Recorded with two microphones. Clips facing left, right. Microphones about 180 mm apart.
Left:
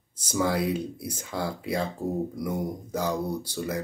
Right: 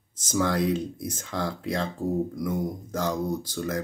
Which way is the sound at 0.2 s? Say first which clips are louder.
Right 1 dB; 10° left (ahead or behind).